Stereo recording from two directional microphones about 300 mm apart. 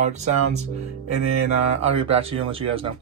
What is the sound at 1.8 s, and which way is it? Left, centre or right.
Speech, centre.